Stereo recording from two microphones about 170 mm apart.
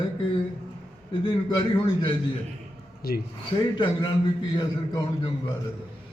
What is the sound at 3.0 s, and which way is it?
Speech, 60° left (ahead or behind).